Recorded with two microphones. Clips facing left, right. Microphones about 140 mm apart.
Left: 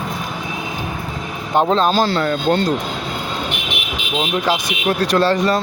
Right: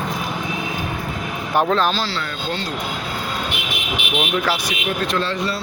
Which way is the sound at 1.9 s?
50° left (ahead or behind).